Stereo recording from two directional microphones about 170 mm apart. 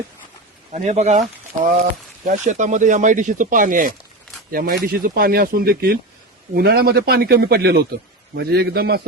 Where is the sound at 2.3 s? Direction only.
45° right (ahead or behind).